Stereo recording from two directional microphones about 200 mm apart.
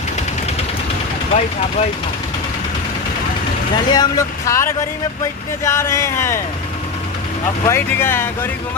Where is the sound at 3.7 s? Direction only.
20° left (ahead or behind).